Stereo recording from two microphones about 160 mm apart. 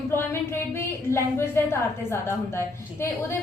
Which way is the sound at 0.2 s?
15° left (ahead or behind).